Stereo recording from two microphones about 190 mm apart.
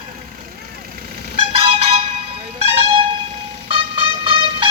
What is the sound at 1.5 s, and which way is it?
Music, 30° right (ahead or behind).